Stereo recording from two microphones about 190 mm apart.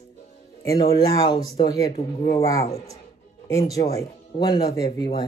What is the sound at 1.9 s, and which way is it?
Speech, 35° left (ahead or behind).